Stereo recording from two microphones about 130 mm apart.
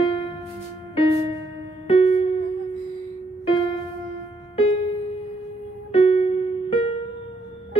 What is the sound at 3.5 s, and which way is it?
Music, 40° left (ahead or behind).